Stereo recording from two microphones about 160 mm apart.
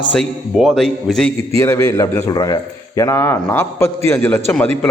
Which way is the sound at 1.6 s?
20° left (ahead or behind).